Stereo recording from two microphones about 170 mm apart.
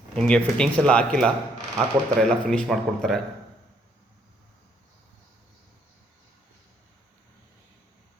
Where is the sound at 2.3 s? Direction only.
5° left (ahead or behind).